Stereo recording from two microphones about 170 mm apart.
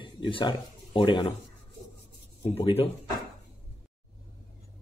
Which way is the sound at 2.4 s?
35° left (ahead or behind).